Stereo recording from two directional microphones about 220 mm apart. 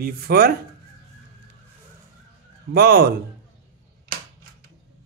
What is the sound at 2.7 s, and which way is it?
Speech, 45° right (ahead or behind).